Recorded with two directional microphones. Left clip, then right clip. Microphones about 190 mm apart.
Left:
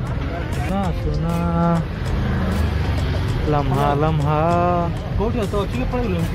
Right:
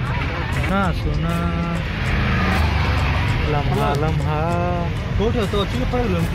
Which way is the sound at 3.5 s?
50° left (ahead or behind).